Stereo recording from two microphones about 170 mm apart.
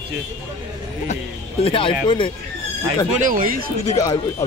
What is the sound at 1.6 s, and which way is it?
Speech, 30° left (ahead or behind).